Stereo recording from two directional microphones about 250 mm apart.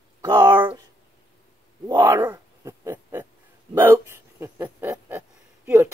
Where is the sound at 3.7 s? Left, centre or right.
Centre.